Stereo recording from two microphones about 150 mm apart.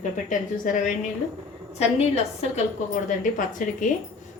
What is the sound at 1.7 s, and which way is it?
Speech, 45° left (ahead or behind).